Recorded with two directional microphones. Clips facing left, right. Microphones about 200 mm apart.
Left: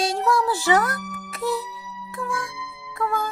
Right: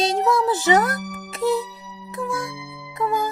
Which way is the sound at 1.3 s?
25° right (ahead or behind).